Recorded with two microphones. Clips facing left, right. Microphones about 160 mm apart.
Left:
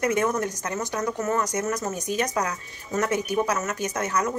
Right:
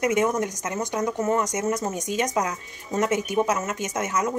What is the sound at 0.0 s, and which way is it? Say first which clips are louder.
Speech: right 1 dB; 20° right (ahead or behind).